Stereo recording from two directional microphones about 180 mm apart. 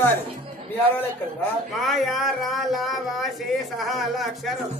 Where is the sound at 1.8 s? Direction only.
Centre (ahead or behind).